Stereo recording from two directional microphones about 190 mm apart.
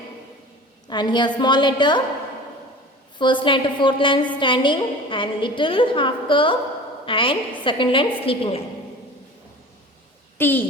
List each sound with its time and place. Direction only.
0.9 s a woman's voice: 25° left (ahead or behind)
3.2 s a woman's voice: 25° left (ahead or behind)
10.3 s a woman's voice: 10° left (ahead or behind)